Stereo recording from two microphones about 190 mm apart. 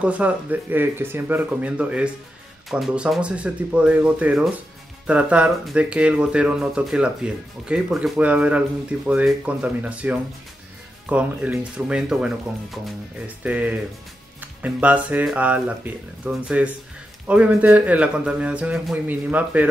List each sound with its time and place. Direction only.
0.0 s speech: 5° right (ahead or behind)
13.4 s speech: 5° right (ahead or behind)